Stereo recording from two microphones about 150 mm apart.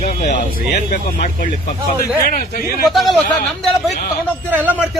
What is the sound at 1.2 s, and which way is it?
A man's voice, 65° left (ahead or behind).